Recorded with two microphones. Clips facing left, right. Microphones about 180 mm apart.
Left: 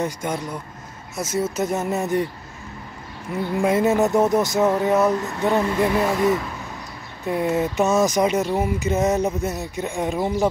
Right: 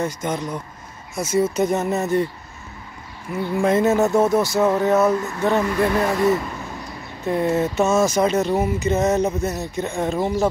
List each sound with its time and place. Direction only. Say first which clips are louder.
0.0 s speech: right 1 dB; 10° left (ahead or behind)
3.6 s speech: right 1 dB; 10° left (ahead or behind)
6.0 s speech: right 1 dB; centre (ahead or behind)